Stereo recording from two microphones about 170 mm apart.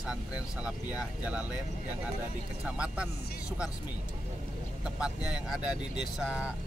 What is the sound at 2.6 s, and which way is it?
Speech, 5° right (ahead or behind).